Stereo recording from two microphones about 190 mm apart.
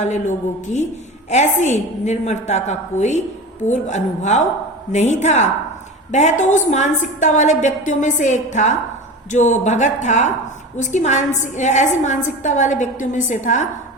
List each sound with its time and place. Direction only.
0.0 s a woman's voice: 40° left (ahead or behind)